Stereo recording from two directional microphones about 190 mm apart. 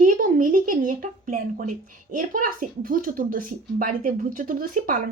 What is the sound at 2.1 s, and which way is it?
Speech, 45° right (ahead or behind).